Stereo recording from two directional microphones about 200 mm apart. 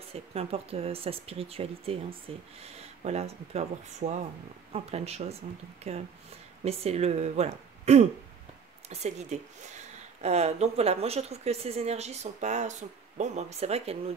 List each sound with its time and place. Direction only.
0.1 s speech: 30° right (ahead or behind)